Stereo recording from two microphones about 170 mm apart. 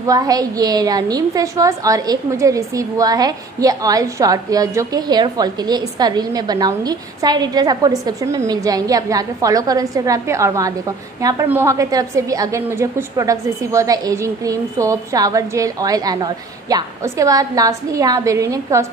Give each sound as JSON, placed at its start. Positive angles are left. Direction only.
{"t": 0.0, "sound": "a woman's voice", "side_deg": -20}